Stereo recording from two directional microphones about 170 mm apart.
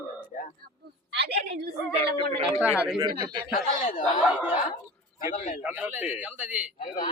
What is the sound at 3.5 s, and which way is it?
Speech, 50° left (ahead or behind).